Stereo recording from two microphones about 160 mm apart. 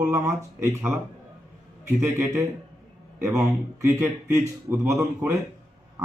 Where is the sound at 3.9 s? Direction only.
15° right (ahead or behind).